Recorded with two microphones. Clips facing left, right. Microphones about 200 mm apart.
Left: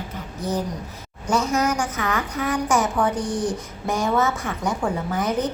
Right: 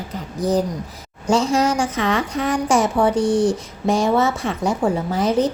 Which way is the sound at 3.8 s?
25° right (ahead or behind).